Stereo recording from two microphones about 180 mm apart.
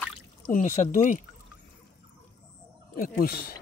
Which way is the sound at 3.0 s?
55° left (ahead or behind).